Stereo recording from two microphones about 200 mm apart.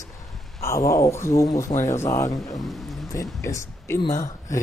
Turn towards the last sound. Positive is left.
turn(degrees=15)  # may be behind; listen again after turning